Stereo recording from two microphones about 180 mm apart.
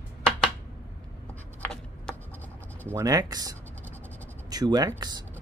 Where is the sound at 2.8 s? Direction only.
15° right (ahead or behind).